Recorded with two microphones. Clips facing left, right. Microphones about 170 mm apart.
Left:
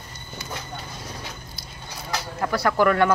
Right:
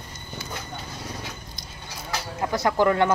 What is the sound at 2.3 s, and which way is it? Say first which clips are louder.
Speech: left 1 dB; 20° right (ahead or behind).